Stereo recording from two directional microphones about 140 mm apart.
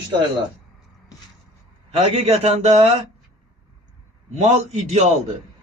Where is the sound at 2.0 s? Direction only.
45° right (ahead or behind).